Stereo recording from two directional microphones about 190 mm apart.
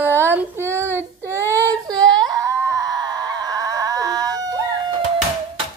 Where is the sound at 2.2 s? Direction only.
20° right (ahead or behind).